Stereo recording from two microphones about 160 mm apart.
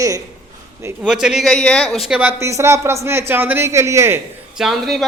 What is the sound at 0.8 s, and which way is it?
Speech, 5° right (ahead or behind).